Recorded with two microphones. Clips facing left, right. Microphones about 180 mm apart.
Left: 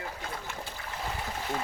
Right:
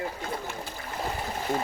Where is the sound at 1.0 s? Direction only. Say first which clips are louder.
Right 4 dB; 40° right (ahead or behind).